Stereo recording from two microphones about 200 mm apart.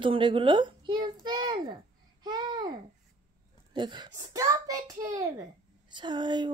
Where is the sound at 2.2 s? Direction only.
20° right (ahead or behind).